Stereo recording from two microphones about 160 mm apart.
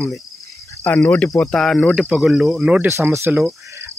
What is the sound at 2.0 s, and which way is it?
Speech, centre (ahead or behind).